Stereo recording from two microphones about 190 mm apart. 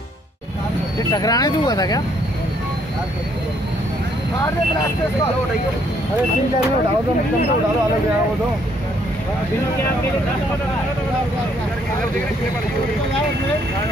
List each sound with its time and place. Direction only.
1.1 s speech: 20° left (ahead or behind)